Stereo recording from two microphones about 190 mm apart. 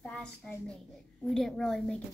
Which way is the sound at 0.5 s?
5° left (ahead or behind).